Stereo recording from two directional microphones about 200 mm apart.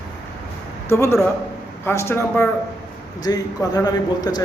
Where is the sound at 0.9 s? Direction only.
15° left (ahead or behind).